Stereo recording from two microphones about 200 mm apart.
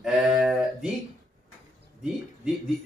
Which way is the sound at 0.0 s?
Centre (ahead or behind).